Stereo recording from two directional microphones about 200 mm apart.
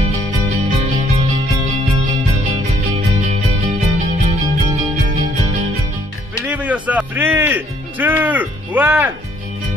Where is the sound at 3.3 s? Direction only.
35° right (ahead or behind).